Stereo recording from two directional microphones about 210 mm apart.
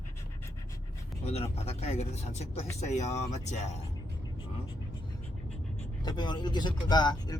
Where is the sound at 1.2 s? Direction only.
30° left (ahead or behind).